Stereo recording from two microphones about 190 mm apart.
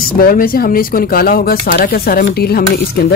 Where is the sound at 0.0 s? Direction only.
50° left (ahead or behind).